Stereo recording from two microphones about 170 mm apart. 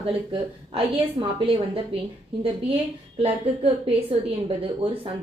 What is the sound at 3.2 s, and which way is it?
A woman's voice, 35° right (ahead or behind).